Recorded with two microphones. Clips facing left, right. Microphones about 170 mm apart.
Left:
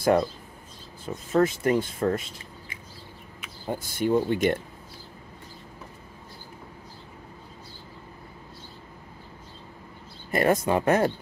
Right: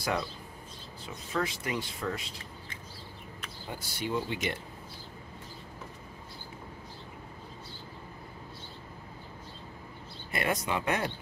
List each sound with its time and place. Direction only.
0.0 s speech: 50° left (ahead or behind)
3.6 s speech: 50° left (ahead or behind)
10.3 s speech: 45° left (ahead or behind)